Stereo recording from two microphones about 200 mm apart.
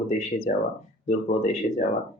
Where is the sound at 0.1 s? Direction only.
35° left (ahead or behind).